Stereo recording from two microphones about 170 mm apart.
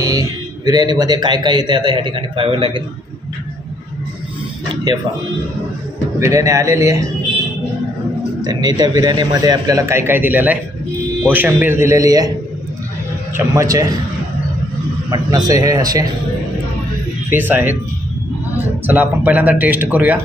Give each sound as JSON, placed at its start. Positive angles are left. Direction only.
{"t": 0.0, "sound": "a man's voice", "side_deg": -20}
{"t": 6.1, "sound": "speech", "side_deg": -15}
{"t": 8.5, "sound": "a man's voice", "side_deg": -25}
{"t": 13.4, "sound": "a man's voice", "side_deg": -20}
{"t": 15.0, "sound": "a man's voice", "side_deg": -20}
{"t": 17.3, "sound": "speech", "side_deg": -10}
{"t": 18.9, "sound": "speech", "side_deg": -10}